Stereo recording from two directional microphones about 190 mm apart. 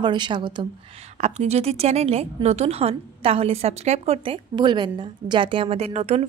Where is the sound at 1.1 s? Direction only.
35° right (ahead or behind).